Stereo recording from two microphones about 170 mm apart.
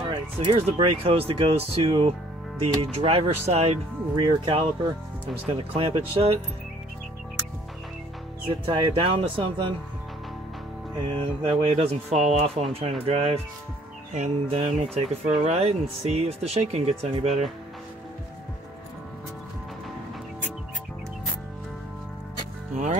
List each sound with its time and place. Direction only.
0.4 s speech: 35° right (ahead or behind)
4.2 s speech: 30° right (ahead or behind)
8.5 s speech: 30° right (ahead or behind)
11.4 s speech: 35° right (ahead or behind)
22.7 s music: 45° right (ahead or behind)